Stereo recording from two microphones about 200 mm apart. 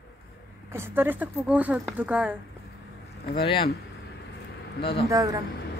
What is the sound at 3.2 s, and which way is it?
Speech, 55° left (ahead or behind).